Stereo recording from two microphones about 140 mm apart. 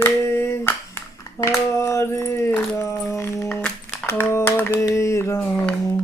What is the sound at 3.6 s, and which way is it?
Music, 10° left (ahead or behind).